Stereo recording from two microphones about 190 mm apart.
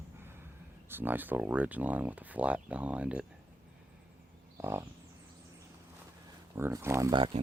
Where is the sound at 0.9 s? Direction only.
10° right (ahead or behind).